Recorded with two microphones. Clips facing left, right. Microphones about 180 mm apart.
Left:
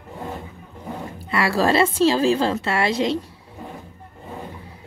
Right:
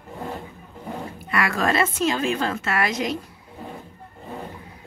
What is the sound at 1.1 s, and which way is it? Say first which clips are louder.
Speech: left 4 dB; 30° left (ahead or behind).